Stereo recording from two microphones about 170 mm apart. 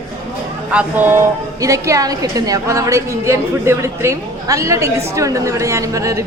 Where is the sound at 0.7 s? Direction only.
10° right (ahead or behind).